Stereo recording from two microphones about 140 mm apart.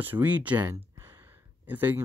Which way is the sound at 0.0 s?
15° right (ahead or behind).